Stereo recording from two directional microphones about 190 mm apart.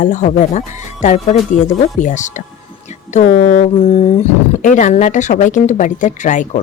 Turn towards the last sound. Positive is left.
turn(degrees=40)  # may be behind; listen again after turning